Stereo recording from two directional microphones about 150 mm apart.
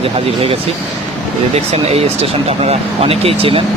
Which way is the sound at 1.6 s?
45° right (ahead or behind).